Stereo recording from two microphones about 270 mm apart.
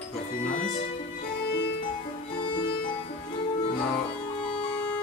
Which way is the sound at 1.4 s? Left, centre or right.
Left.